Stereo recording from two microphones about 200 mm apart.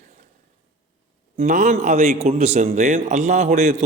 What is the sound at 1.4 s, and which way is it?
A man's voice, 35° right (ahead or behind).